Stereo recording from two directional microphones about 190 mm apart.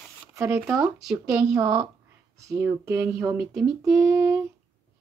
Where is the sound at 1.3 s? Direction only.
15° right (ahead or behind).